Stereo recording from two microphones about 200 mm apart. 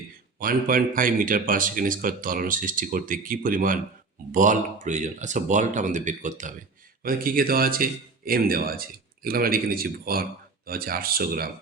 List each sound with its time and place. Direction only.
0.3 s speech: 45° right (ahead or behind)